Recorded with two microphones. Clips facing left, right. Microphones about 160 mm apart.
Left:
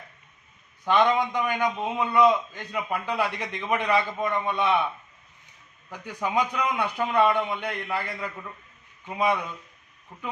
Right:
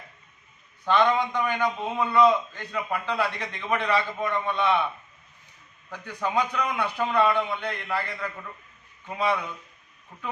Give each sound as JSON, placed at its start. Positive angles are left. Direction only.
{"t": 0.9, "sound": "a man's voice", "side_deg": 15}
{"t": 5.9, "sound": "a man's voice", "side_deg": 15}